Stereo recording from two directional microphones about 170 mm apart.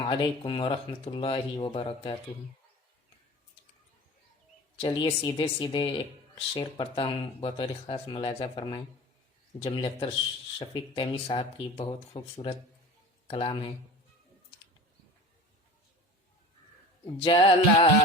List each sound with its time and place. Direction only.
0.0 s speech: 30° left (ahead or behind)
4.8 s speech: 25° left (ahead or behind)
17.2 s speech: 35° left (ahead or behind)